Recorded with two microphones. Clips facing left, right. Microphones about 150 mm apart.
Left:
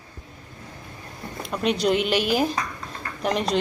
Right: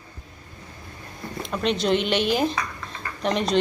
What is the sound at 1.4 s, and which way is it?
Speech, 5° left (ahead or behind).